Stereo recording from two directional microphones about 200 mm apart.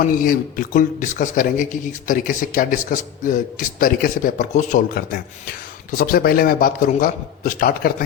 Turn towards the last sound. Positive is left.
turn(degrees=45)  # may be behind; listen again after turning